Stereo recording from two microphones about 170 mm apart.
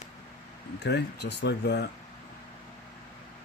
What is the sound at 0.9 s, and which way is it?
Speech, 80° left.